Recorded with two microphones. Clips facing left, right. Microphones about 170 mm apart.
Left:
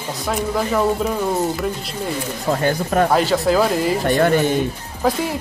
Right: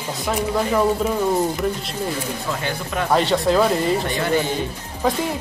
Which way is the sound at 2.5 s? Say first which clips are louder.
Left 10 dB; 45° left (ahead or behind).